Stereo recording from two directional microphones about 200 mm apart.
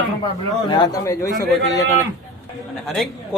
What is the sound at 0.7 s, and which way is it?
Speech, 20° left (ahead or behind).